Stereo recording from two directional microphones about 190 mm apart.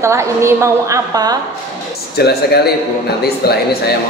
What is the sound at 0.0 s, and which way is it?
A woman's voice, 15° right (ahead or behind).